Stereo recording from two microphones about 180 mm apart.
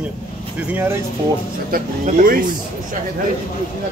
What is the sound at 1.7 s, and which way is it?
Speech, 50° right (ahead or behind).